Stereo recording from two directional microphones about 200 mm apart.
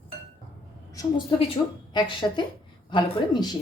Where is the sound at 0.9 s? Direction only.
25° left (ahead or behind).